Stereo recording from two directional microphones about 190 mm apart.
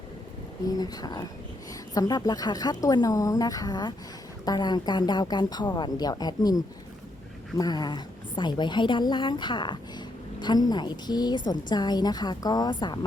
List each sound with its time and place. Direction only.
0.8 s a woman's voice: 20° left (ahead or behind)